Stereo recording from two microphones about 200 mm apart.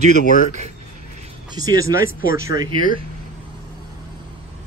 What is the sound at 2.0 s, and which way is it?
Speech, 45° left (ahead or behind).